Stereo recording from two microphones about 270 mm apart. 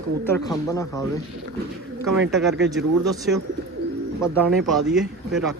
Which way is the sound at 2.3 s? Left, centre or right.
Centre.